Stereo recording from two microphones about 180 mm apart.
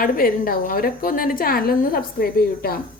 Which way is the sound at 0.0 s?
55° left (ahead or behind).